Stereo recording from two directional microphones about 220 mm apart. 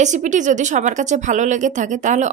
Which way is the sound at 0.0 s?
35° right (ahead or behind).